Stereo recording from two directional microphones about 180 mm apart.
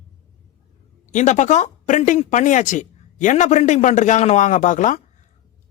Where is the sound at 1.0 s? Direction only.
40° left (ahead or behind).